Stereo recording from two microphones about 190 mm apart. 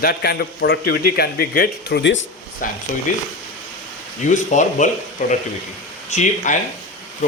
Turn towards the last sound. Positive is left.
turn(degrees=40)  # may be behind; listen again after turning